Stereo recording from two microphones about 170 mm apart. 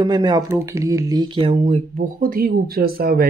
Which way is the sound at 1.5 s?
45° right (ahead or behind).